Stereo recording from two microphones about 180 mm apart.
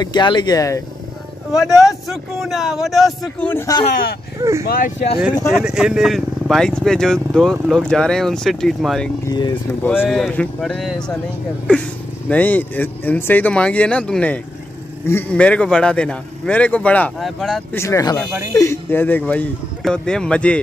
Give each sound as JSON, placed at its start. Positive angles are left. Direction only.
{"t": 0.0, "sound": "speech", "side_deg": 25}
{"t": 1.9, "sound": "speech", "side_deg": 0}
{"t": 3.9, "sound": "speech", "side_deg": 60}
{"t": 4.4, "sound": "speech", "side_deg": -15}
{"t": 4.6, "sound": "speech", "side_deg": 55}
{"t": 5.5, "sound": "speech", "side_deg": -5}
{"t": 9.2, "sound": "speech", "side_deg": 25}
{"t": 9.8, "sound": "speech", "side_deg": 5}
{"t": 12.3, "sound": "speech", "side_deg": 10}
{"t": 17.7, "sound": "speech", "side_deg": 15}